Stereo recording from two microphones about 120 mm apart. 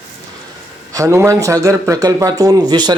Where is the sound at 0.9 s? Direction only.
25° right (ahead or behind).